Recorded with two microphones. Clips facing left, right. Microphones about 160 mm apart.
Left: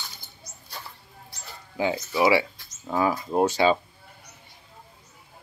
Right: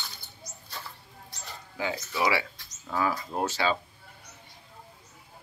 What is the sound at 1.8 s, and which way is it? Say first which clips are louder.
Speech: left 6 dB; 20° left (ahead or behind).